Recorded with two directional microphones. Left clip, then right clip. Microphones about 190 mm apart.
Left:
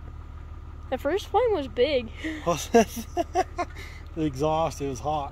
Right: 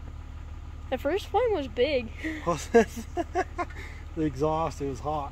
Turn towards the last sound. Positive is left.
turn(degrees=50)  # may be behind; listen again after turning